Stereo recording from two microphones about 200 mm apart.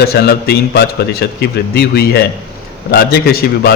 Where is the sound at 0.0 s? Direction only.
50° left (ahead or behind).